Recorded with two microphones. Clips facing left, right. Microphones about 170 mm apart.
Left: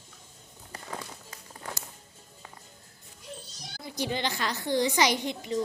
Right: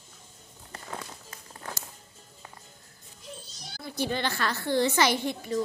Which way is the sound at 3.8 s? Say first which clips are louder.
Right 1 dB; 15° left (ahead or behind).